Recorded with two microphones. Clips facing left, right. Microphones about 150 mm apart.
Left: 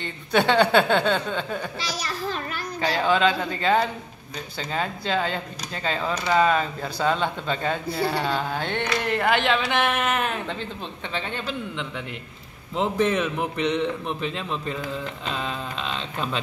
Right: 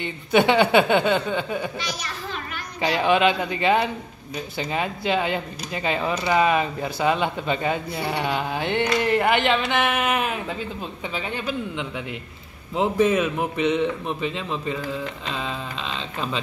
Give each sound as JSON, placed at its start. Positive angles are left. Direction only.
{"t": 0.0, "sound": "speech", "side_deg": -5}
{"t": 1.8, "sound": "a child's voice", "side_deg": 35}
{"t": 3.1, "sound": "a man's voice", "side_deg": -15}